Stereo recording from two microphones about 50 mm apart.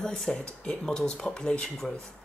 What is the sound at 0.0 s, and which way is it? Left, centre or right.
Speech, centre.